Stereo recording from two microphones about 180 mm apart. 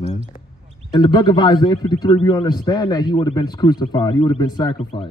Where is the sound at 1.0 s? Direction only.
20° left (ahead or behind).